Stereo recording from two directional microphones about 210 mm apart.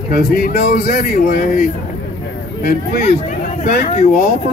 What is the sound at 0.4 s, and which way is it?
Speech, 40° left (ahead or behind).